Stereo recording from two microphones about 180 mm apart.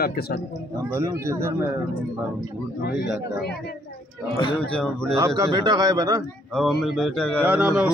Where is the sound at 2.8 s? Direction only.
60° left (ahead or behind).